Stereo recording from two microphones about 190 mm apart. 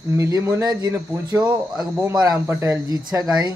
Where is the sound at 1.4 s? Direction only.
5° right (ahead or behind).